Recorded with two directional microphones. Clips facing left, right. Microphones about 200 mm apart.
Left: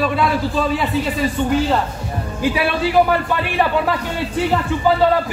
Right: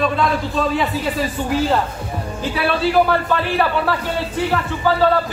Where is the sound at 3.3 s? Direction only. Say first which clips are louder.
Even; 15° left (ahead or behind).